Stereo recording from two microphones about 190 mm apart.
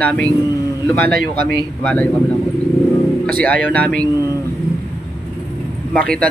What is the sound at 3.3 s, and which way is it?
Speech, 5° left (ahead or behind).